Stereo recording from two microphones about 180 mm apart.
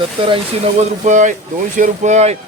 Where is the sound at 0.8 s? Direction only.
40° right (ahead or behind).